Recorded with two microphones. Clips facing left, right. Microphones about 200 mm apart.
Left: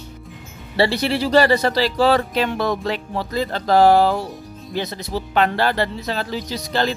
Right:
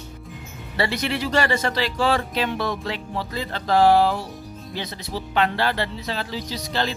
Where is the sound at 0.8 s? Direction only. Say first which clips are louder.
Left 6 dB; 35° left (ahead or behind).